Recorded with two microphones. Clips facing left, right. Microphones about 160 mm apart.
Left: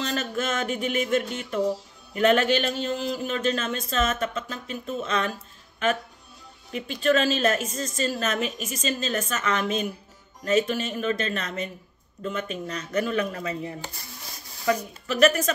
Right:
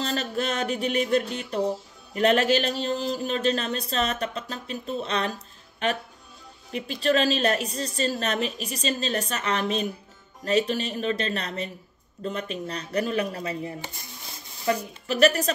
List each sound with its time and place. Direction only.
0.0 s speech: 35° right (ahead or behind)
6.9 s speech: 35° right (ahead or behind)
15.0 s speech: 35° right (ahead or behind)